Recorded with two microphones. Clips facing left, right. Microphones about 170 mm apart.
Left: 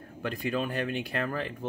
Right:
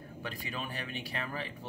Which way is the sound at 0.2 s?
50° left (ahead or behind).